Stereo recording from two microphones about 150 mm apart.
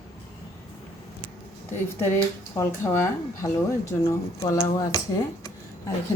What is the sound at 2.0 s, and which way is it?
A woman's voice, 15° left (ahead or behind).